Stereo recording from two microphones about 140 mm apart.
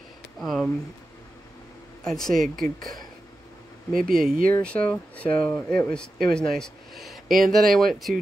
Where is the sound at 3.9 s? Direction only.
90° right.